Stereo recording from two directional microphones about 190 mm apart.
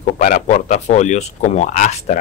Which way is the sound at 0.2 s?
40° left (ahead or behind).